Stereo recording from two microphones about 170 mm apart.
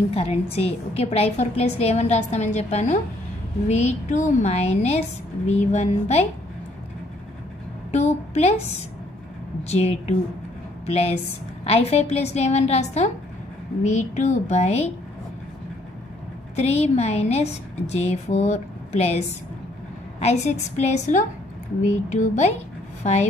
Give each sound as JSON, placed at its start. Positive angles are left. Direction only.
{"t": 0.1, "sound": "a woman's voice", "side_deg": 35}
{"t": 7.9, "sound": "a woman's voice", "side_deg": 40}
{"t": 9.7, "sound": "a woman's voice", "side_deg": 40}
{"t": 16.5, "sound": "a woman's voice", "side_deg": 40}